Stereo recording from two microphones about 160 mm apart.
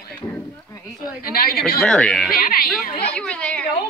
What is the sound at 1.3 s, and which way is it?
Speech, 70° left (ahead or behind).